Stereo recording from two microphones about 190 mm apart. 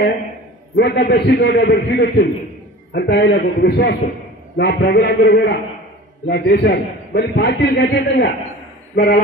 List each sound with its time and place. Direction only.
0.7 s a man's voice: 60° left (ahead or behind)
8.9 s a man's voice: 55° left (ahead or behind)